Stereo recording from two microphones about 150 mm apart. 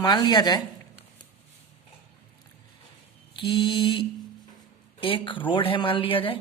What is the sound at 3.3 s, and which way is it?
Speech, 35° left (ahead or behind).